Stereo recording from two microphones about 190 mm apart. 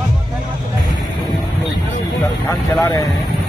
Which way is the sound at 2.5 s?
20° left (ahead or behind).